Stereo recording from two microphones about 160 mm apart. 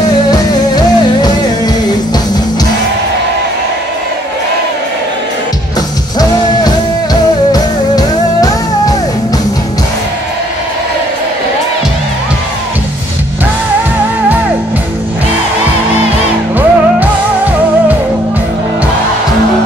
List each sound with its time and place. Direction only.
6.1 s music: 25° left (ahead or behind)
16.5 s music: 10° right (ahead or behind)